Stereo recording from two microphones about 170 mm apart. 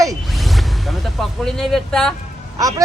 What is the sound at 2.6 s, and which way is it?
Speech, 20° right (ahead or behind).